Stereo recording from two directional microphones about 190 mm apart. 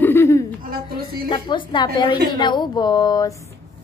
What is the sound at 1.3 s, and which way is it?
Speech, 25° left (ahead or behind).